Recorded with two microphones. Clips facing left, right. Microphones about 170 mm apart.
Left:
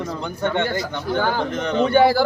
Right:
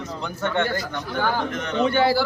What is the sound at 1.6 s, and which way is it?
Speech, 35° left (ahead or behind).